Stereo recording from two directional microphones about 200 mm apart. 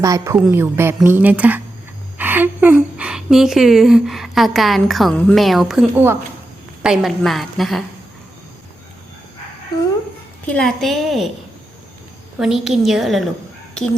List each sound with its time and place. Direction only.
0.0 s a woman's voice: 15° right (ahead or behind); by 7.9 s centre (ahead or behind)
10.4 s a woman's voice: 5° left (ahead or behind)
12.4 s a woman's voice: centre (ahead or behind)